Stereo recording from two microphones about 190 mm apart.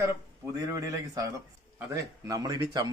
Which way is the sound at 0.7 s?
15° right (ahead or behind).